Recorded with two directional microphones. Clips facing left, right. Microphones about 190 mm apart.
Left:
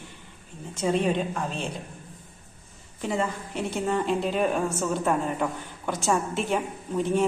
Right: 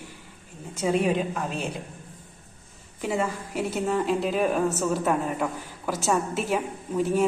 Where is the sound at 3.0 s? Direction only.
5° right (ahead or behind).